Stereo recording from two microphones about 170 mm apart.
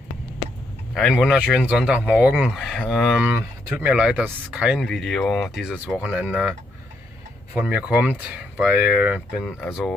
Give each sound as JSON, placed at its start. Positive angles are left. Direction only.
{"t": 0.9, "sound": "speech", "side_deg": 0}
{"t": 3.3, "sound": "speech", "side_deg": -10}
{"t": 7.5, "sound": "speech", "side_deg": -5}